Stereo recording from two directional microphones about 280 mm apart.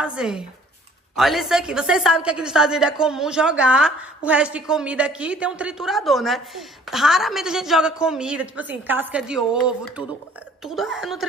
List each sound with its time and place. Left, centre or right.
0.0 s a woman's voice: centre